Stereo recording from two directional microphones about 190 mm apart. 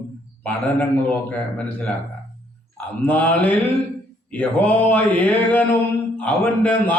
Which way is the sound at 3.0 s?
10° left (ahead or behind).